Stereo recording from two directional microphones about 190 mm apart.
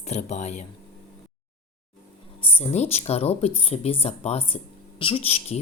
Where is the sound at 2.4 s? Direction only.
30° left (ahead or behind).